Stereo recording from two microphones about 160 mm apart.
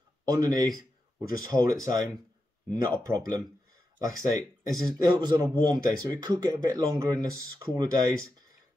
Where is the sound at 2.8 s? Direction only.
20° right (ahead or behind).